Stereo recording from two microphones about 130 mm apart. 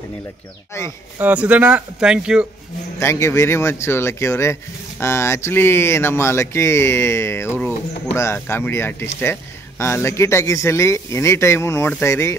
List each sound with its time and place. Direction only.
1.1 s speech: 10° right (ahead or behind)
3.0 s speech: 20° left (ahead or behind)